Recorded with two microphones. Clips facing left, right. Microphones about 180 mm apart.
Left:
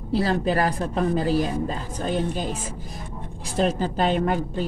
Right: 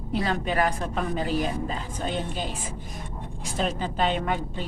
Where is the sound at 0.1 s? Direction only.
35° left (ahead or behind).